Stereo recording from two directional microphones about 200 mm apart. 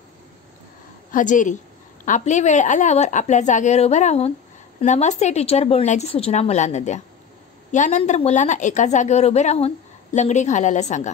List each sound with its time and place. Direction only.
1.1 s a woman's voice: 40° left (ahead or behind)